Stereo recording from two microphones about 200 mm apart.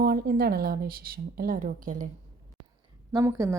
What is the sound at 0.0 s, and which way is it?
A woman's voice, 50° right (ahead or behind).